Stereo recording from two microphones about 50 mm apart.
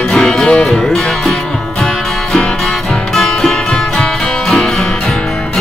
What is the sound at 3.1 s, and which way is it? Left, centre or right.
Music, centre.